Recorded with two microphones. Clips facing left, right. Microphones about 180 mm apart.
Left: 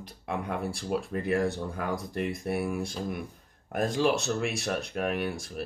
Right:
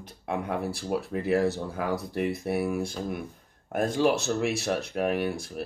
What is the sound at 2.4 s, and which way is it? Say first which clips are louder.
Speech: right 2 dB; centre (ahead or behind).